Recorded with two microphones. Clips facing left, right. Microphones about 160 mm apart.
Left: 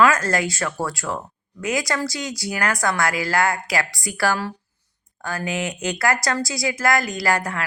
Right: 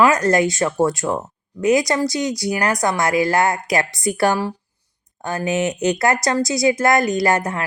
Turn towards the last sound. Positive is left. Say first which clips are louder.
# right 5 dB
turn(degrees=-20)  # may be behind; listen again after turning